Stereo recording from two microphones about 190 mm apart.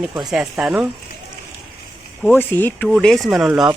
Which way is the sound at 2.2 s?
10° left (ahead or behind).